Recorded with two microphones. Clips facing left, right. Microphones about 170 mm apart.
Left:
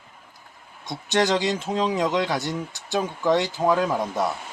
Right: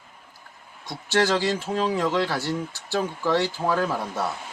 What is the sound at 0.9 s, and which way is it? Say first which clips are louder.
Speech: left 1 dB; 20° left (ahead or behind).